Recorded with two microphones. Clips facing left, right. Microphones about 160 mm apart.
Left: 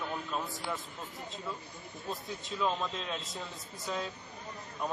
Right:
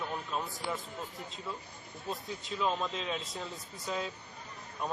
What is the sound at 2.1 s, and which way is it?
A man's voice, 5° right (ahead or behind).